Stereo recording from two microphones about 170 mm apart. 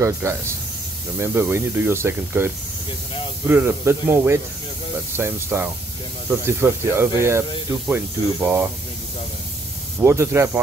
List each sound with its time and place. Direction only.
0.0 s speech: 15° right (ahead or behind)
9.9 s speech: 15° right (ahead or behind)